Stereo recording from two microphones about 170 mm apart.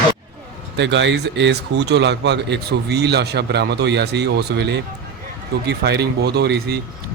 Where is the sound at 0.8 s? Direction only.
90° right.